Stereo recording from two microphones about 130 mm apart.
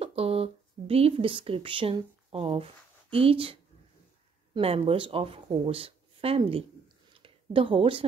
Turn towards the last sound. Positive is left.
turn(degrees=-40)  # may be behind; listen again after turning